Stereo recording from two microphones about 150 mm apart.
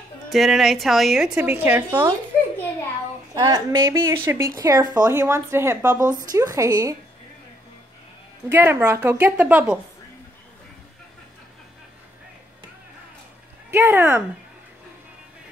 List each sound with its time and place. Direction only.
0.3 s a woman's voice: centre (ahead or behind)
3.3 s a woman's voice: 25° right (ahead or behind)
8.5 s a woman's voice: 15° right (ahead or behind)
13.7 s speech: 15° right (ahead or behind)